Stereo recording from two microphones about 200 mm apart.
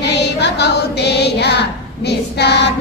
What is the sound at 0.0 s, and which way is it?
Female singing, 60° left (ahead or behind).